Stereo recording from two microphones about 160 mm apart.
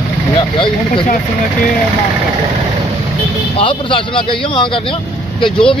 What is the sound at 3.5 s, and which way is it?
Speech, 30° left (ahead or behind).